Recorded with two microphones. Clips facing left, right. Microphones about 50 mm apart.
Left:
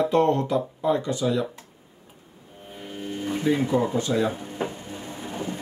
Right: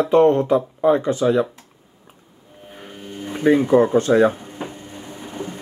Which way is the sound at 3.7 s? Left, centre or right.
Right.